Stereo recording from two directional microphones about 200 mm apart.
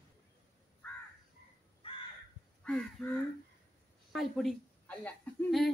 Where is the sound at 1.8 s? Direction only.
25° left (ahead or behind).